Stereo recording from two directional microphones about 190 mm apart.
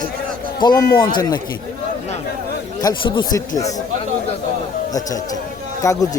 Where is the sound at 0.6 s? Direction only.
20° left (ahead or behind).